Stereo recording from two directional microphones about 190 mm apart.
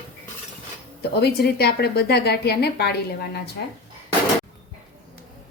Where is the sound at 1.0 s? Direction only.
55° left (ahead or behind).